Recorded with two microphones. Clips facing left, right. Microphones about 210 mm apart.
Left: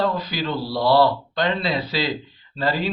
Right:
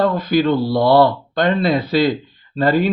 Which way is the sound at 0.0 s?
50° right (ahead or behind).